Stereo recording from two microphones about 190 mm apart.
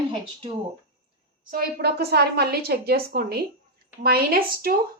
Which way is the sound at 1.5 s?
55° right (ahead or behind).